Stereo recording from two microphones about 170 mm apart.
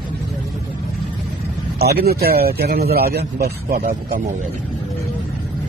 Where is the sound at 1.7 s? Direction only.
70° right (ahead or behind).